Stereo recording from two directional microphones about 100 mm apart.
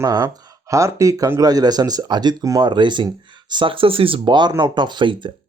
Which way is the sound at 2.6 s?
50° right (ahead or behind).